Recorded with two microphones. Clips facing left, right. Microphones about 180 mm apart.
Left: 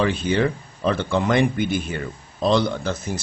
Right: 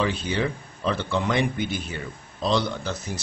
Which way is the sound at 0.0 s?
55° left (ahead or behind).